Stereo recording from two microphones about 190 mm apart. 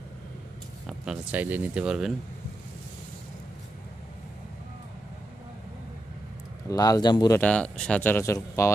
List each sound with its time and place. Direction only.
0.8 s speech: 5° right (ahead or behind)
6.7 s speech: 20° left (ahead or behind)
7.3 s speech: 5° left (ahead or behind)